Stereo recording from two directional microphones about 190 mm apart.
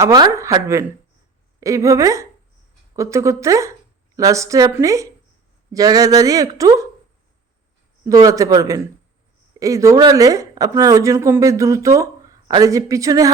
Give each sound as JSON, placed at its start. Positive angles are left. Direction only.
{"t": 0.0, "sound": "speech", "side_deg": -15}
{"t": 8.0, "sound": "speech", "side_deg": -15}